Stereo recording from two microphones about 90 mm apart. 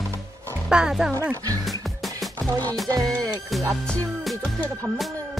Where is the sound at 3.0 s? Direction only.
Centre (ahead or behind).